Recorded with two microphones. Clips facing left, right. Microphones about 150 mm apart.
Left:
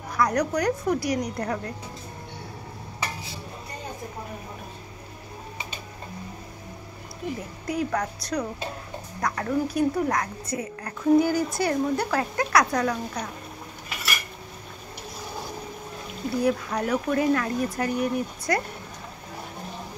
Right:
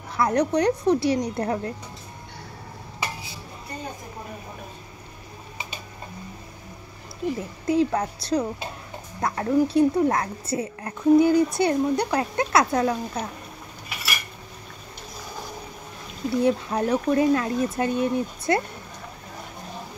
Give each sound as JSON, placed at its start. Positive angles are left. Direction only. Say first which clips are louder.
{"t": 0.1, "sound": "a woman's voice", "louder": "right 2 dB", "side_deg": -25}
{"t": 7.6, "sound": "a woman's voice", "louder": "right 5 dB", "side_deg": -25}
{"t": 16.3, "sound": "a woman's voice", "louder": "right 3 dB", "side_deg": -25}